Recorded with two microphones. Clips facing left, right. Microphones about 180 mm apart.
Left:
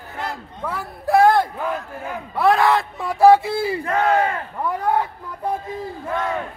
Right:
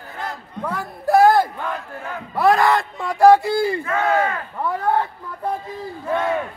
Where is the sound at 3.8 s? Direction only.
35° left (ahead or behind).